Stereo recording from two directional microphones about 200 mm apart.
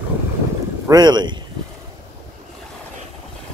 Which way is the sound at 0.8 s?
20° right (ahead or behind).